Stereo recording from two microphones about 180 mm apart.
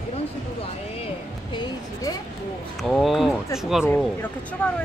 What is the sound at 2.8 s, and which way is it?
Speech, centre (ahead or behind).